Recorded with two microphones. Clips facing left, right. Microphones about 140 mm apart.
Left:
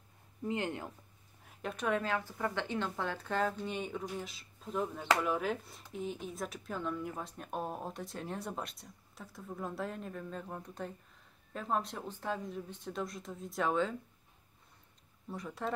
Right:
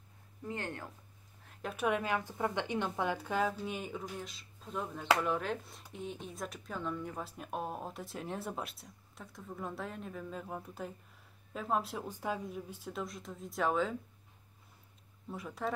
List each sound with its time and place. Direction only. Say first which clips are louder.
0.5 s speech: left 4 dB; 15° left (ahead or behind)
1.6 s a woman's voice: right 1 dB; 5° right (ahead or behind)
15.2 s a woman's voice: right 1 dB; centre (ahead or behind)